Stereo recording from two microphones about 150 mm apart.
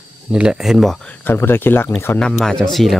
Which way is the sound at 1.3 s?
15° left (ahead or behind).